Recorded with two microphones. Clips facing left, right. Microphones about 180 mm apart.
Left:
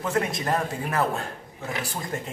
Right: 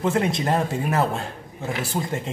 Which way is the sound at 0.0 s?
25° right (ahead or behind).